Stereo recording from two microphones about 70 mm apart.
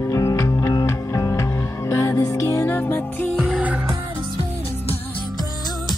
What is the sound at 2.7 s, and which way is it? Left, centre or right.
Music, left.